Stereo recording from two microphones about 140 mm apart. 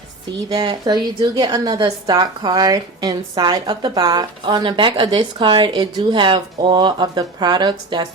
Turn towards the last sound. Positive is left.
turn(degrees=-30)  # may be behind; listen again after turning